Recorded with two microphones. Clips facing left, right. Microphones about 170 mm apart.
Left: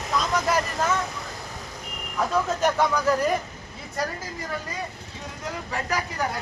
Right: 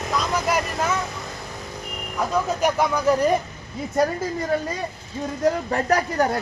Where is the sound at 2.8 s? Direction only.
15° right (ahead or behind).